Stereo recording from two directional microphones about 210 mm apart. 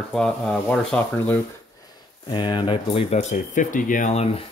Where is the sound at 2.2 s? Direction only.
20° left (ahead or behind).